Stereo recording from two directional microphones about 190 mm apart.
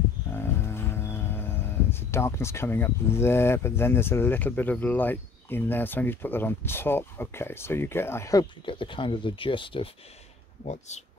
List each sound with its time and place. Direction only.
0.3 s speech: 15° left (ahead or behind)
10.6 s speech: 35° left (ahead or behind)